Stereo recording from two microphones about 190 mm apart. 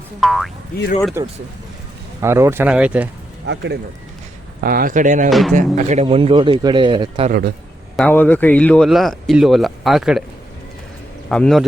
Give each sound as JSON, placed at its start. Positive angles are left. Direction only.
{"t": 0.2, "sound": "speech", "side_deg": 0}
{"t": 1.2, "sound": "speech", "side_deg": -15}
{"t": 3.4, "sound": "speech", "side_deg": -70}
{"t": 4.6, "sound": "speech", "side_deg": -50}
{"t": 5.3, "sound": "speech", "side_deg": 0}
{"t": 5.5, "sound": "speech", "side_deg": -40}
{"t": 7.3, "sound": "speech", "side_deg": -55}
{"t": 7.9, "sound": "speech", "side_deg": 10}
{"t": 11.3, "sound": "speech", "side_deg": 0}